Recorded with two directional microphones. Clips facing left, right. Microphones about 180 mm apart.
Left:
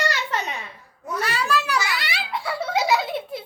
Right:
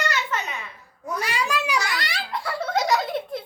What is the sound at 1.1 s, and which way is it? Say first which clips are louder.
Speech: left 2 dB; 10° right (ahead or behind).